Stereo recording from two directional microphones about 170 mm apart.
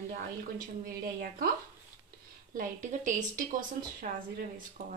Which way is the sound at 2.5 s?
55° right (ahead or behind).